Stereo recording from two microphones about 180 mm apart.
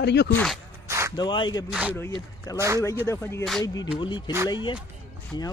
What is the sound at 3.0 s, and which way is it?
Speech, 15° left (ahead or behind).